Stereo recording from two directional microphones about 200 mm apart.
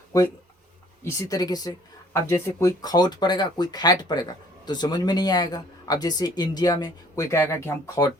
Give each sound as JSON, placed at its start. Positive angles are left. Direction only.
{"t": 1.0, "sound": "speech", "side_deg": 15}